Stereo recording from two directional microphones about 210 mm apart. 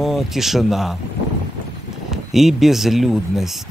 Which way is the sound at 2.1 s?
Centre (ahead or behind).